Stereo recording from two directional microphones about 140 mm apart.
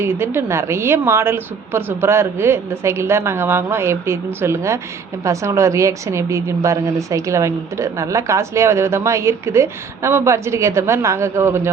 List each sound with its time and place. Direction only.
0.0 s a woman's voice: 15° right (ahead or behind)